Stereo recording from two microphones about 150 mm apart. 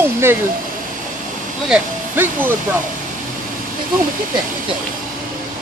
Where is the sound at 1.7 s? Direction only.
15° right (ahead or behind).